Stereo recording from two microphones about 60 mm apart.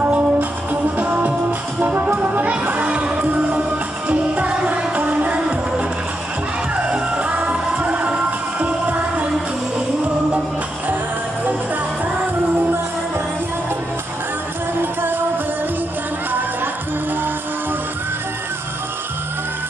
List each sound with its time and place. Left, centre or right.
0.0 s music: right
14.8 s music: right